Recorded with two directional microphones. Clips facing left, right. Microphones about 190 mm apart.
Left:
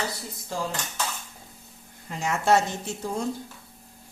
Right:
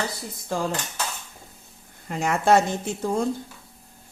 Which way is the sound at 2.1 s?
55° right (ahead or behind).